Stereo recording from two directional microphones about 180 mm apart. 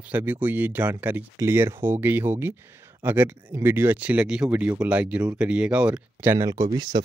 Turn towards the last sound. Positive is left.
turn(degrees=-25)  # may be behind; listen again after turning